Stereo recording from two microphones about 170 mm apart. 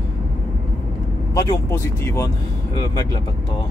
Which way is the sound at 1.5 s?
15° left (ahead or behind).